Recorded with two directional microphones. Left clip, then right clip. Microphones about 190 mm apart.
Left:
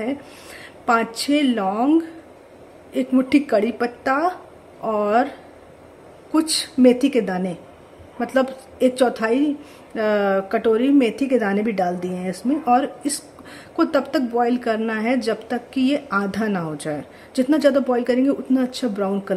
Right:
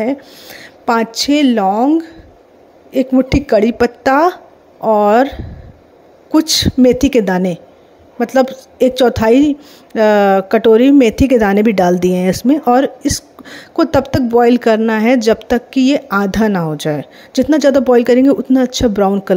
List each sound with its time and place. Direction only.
0.0 s speech: 35° right (ahead or behind)